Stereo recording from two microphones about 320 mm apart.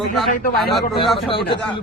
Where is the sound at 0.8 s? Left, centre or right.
Centre.